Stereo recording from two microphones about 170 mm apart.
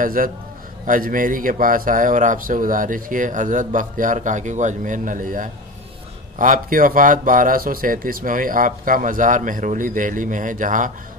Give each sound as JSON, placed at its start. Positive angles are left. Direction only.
{"t": 0.0, "sound": "speech", "side_deg": -55}